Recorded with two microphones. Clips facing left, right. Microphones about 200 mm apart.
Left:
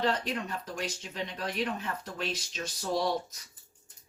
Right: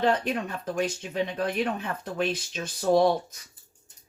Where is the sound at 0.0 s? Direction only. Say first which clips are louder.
Right 5 dB; 55° right (ahead or behind).